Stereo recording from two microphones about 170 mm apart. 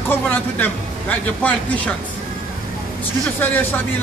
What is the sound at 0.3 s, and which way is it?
A man's voice, 10° left (ahead or behind).